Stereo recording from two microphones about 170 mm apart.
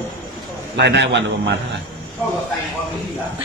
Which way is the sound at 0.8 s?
90° right.